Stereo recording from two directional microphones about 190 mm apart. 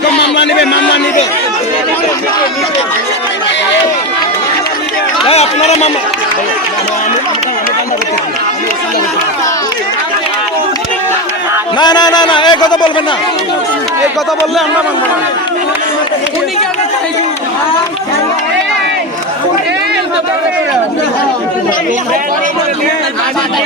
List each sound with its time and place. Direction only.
0.2 s speech: 65° left (ahead or behind)
5.2 s a sound: 35° left (ahead or behind)
11.8 s a man's voice: 20° left (ahead or behind)